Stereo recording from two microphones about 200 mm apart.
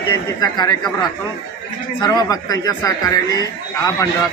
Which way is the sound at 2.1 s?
15° left (ahead or behind).